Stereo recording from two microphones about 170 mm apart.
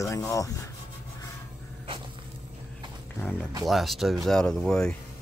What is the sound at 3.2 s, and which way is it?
Speech, 10° left (ahead or behind).